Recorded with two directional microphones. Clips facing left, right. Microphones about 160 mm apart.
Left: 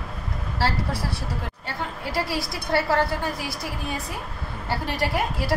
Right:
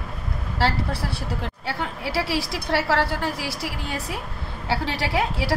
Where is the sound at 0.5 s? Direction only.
65° right (ahead or behind).